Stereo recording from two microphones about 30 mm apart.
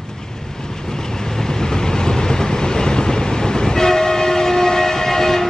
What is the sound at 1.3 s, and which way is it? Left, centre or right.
Train, centre.